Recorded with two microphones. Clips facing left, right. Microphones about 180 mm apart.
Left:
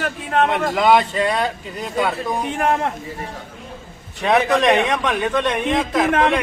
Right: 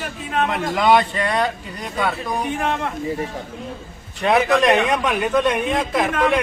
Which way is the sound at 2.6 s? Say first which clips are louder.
Left 4 dB; 50° left (ahead or behind).